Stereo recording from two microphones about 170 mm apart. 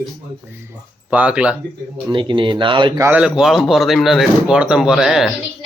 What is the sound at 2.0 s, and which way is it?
Speech, 30° right (ahead or behind).